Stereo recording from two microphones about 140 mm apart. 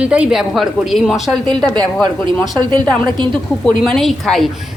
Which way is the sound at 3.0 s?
35° right (ahead or behind).